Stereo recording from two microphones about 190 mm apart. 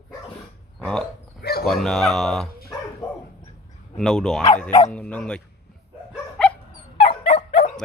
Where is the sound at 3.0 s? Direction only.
20° left (ahead or behind).